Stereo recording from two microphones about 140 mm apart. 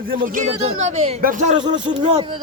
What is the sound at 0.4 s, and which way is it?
Speech, 50° right (ahead or behind).